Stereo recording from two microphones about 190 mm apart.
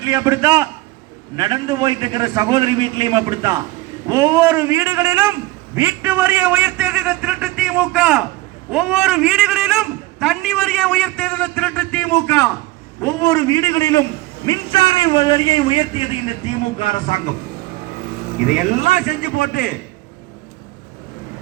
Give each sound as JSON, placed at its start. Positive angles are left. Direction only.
{"t": 0.0, "sound": "a man's voice", "side_deg": -15}
{"t": 17.1, "sound": "speech", "side_deg": 35}
{"t": 18.0, "sound": "vehicle", "side_deg": -45}
{"t": 18.5, "sound": "a man's voice", "side_deg": 40}